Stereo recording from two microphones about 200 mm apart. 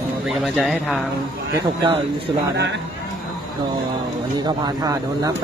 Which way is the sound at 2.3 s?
20° right (ahead or behind).